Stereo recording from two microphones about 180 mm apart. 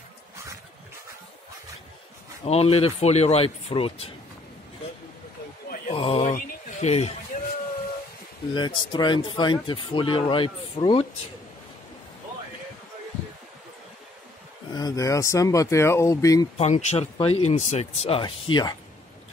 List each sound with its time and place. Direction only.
2.4 s speech: 35° left (ahead or behind)
5.9 s speech: 30° left (ahead or behind)
8.5 s speech: 25° left (ahead or behind)
14.7 s speech: 20° left (ahead or behind)
16.5 s speech: 40° left (ahead or behind)